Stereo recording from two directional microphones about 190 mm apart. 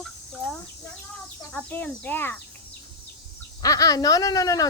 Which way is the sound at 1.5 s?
10° left (ahead or behind).